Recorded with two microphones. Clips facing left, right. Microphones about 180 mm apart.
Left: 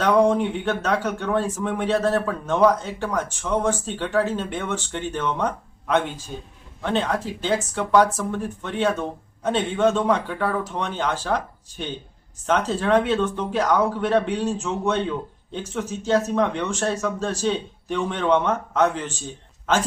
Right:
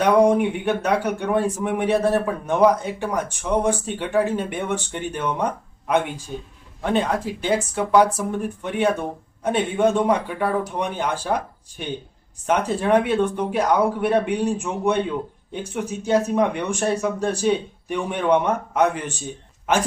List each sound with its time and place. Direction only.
0.0 s speech: 15° right (ahead or behind)